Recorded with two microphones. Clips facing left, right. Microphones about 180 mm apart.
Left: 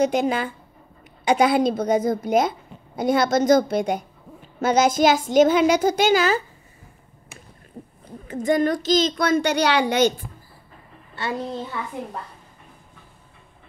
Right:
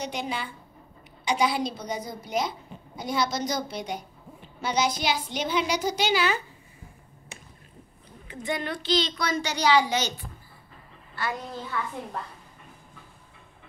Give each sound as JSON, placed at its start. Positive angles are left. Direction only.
{"t": 0.0, "sound": "a woman's voice", "side_deg": 50}
{"t": 7.8, "sound": "a sound", "side_deg": 70}
{"t": 8.3, "sound": "a woman's voice", "side_deg": 45}
{"t": 11.1, "sound": "a woman's voice", "side_deg": 25}